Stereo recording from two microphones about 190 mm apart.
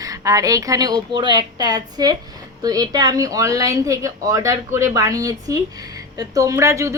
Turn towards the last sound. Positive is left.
turn(degrees=-15)  # may be behind; listen again after turning